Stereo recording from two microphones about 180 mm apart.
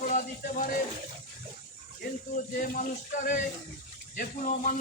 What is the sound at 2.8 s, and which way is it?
A man's voice, 45° left (ahead or behind).